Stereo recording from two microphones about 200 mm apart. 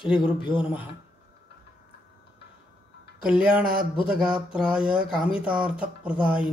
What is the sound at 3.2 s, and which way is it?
Speech, 5° right (ahead or behind).